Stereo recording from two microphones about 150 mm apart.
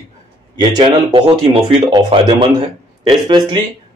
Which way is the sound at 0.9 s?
35° right (ahead or behind).